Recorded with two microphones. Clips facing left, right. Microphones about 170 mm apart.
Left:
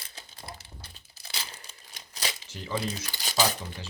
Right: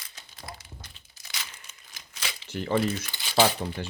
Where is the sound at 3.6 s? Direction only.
50° right (ahead or behind).